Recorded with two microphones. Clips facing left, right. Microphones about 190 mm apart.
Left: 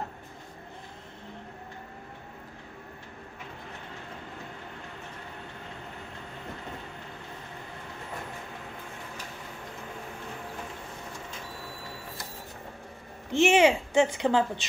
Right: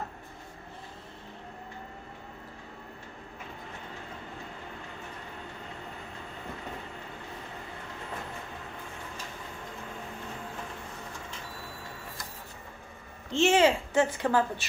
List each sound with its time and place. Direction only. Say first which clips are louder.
13.3 s a woman's voice: left 2 dB; 15° left (ahead or behind)